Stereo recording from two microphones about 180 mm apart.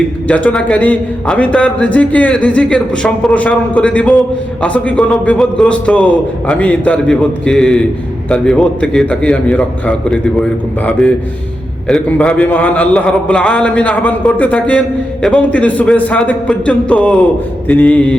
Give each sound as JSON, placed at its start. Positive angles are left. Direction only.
{"t": 0.3, "sound": "a man's voice", "side_deg": 10}